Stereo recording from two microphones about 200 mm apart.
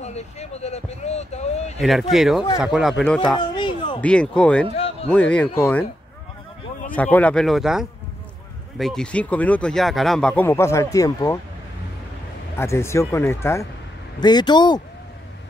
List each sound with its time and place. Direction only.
0.0 s speech: 35° left (ahead or behind)
1.8 s speech: centre (ahead or behind)
3.3 s a sound: 25° left (ahead or behind)
4.0 s speech: 5° left (ahead or behind)
4.7 s a sound: 30° left (ahead or behind)
5.1 s speech: 5° left (ahead or behind)
7.0 s speech: 10° left (ahead or behind)
12.5 s speech: 15° left (ahead or behind)